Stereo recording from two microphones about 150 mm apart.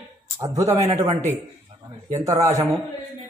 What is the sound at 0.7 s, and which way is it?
Speech, 45° right (ahead or behind).